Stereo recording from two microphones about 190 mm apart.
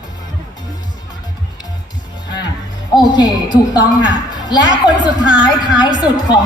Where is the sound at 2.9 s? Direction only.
25° left (ahead or behind).